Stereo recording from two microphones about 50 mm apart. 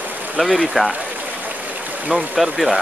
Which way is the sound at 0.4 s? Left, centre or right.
Centre.